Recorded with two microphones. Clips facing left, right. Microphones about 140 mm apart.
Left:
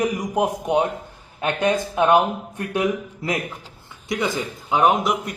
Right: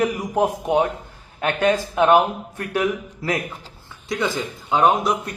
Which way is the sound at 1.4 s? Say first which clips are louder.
Right 1 dB; 20° left (ahead or behind).